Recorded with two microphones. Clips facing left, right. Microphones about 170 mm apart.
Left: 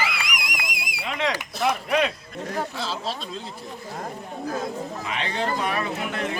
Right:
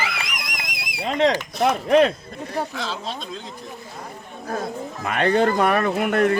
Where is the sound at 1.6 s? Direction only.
40° right (ahead or behind).